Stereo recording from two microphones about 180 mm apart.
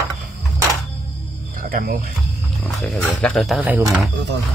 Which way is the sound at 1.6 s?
50° right (ahead or behind).